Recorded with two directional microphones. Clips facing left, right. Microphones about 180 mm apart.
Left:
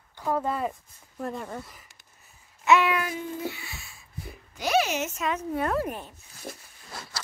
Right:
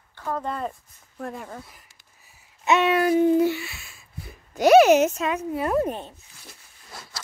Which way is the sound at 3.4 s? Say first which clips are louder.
Right 13 dB; 75° right (ahead or behind).